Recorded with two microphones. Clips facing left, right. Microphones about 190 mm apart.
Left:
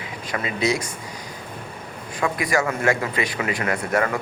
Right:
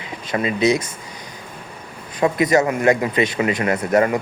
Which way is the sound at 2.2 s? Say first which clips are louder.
Right 6 dB; 20° right (ahead or behind).